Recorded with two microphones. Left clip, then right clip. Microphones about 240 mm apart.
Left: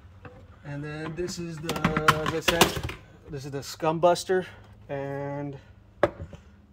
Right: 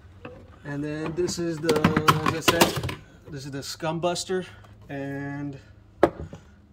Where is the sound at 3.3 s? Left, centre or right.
Centre.